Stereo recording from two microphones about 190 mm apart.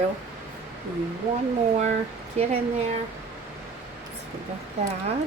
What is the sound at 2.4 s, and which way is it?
Speech, 35° right (ahead or behind).